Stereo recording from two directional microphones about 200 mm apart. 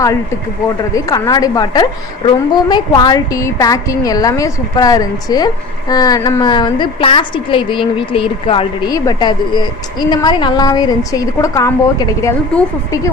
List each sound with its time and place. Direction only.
0.9 s a woman's voice: 15° left (ahead or behind)